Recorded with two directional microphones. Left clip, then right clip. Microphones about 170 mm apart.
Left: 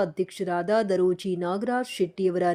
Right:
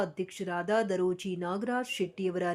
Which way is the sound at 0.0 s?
25° left (ahead or behind).